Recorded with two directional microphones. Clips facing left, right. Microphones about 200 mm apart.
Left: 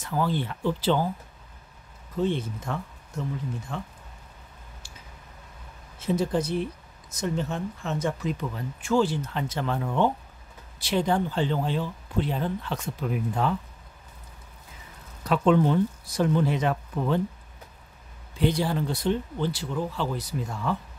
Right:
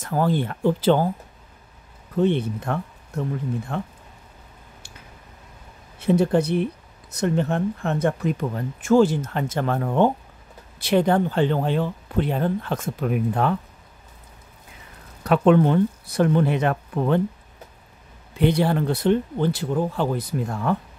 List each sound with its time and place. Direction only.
0.0 s speech: 50° right (ahead or behind)
2.1 s speech: 65° right (ahead or behind)
5.9 s speech: 65° right (ahead or behind)
15.2 s speech: 60° right (ahead or behind)
18.4 s speech: 60° right (ahead or behind)